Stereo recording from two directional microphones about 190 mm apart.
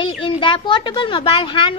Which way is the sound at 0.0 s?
25° left (ahead or behind).